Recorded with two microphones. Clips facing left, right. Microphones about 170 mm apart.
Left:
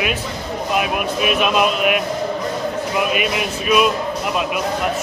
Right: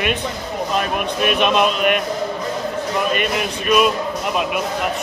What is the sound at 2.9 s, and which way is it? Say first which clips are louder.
Speech: even; 5° left (ahead or behind).